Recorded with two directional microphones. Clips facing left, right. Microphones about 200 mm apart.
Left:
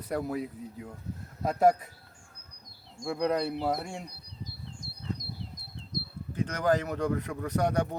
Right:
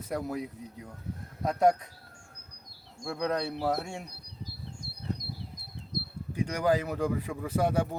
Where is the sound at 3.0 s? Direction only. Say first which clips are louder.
Left 2 dB; centre (ahead or behind).